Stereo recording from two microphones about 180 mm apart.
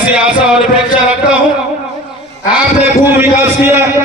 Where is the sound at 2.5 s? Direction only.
10° right (ahead or behind).